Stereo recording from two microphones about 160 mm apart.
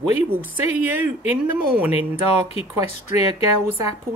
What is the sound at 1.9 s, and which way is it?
Speech, 40° left (ahead or behind).